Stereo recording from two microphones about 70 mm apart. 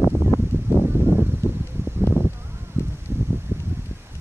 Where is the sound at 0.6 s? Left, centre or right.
Right.